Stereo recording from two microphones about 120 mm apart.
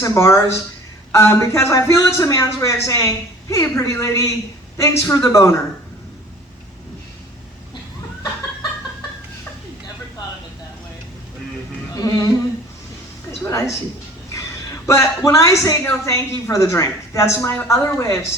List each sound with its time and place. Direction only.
0.0 s a woman's voice: 25° left (ahead or behind)
11.9 s speech: 30° left (ahead or behind)
13.5 s a woman's voice: 25° left (ahead or behind)
14.8 s a woman's voice: 25° left (ahead or behind)